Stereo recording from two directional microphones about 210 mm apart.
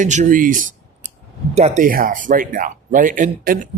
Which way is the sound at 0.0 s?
35° right (ahead or behind).